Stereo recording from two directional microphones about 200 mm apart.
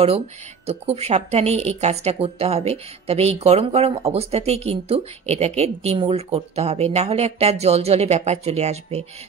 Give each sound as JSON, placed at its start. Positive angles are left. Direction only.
{"t": 0.7, "sound": "a woman's voice", "side_deg": -30}